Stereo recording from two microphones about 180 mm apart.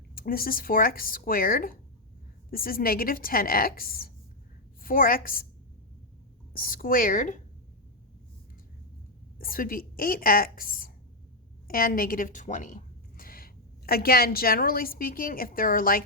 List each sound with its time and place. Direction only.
0.2 s a woman's voice: 55° left (ahead or behind)
6.6 s speech: 55° left (ahead or behind)
9.4 s a woman's voice: 55° left (ahead or behind)